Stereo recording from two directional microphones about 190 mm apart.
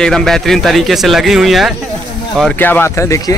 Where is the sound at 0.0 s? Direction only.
5° left (ahead or behind).